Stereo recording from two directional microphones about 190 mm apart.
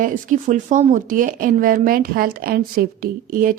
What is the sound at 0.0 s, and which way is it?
Speech, 40° right (ahead or behind).